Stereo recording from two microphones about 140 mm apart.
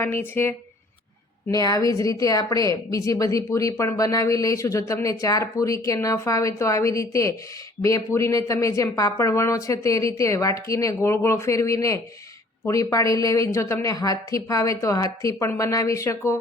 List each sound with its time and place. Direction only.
0.0 s a woman's voice: 15° left (ahead or behind)